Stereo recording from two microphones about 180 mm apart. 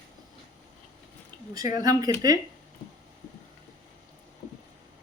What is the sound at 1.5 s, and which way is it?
Speech, 20° right (ahead or behind).